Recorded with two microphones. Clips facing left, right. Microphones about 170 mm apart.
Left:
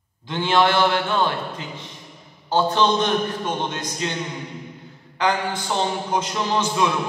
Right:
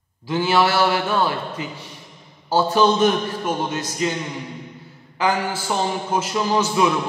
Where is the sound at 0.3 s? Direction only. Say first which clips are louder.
Right 1 dB; 5° right (ahead or behind).